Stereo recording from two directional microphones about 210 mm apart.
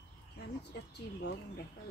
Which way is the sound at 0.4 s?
50° left (ahead or behind).